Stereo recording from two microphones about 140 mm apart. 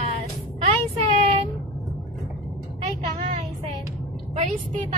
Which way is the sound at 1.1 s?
45° right (ahead or behind).